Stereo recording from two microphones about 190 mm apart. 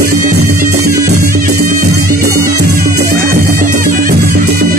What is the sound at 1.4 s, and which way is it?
Music, 45° right (ahead or behind).